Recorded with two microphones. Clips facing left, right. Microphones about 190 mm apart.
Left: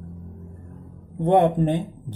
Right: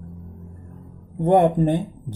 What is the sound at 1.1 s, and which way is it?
Speech, 10° right (ahead or behind).